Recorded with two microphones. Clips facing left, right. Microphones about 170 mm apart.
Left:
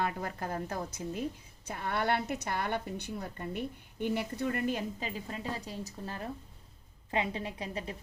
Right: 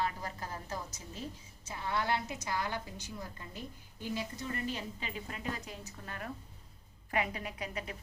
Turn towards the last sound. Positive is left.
turn(degrees=30)  # may be behind; listen again after turning